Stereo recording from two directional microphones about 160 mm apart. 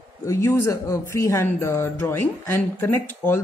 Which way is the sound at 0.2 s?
20° left (ahead or behind).